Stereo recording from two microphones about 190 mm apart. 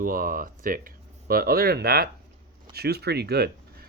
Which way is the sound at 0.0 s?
45° right (ahead or behind).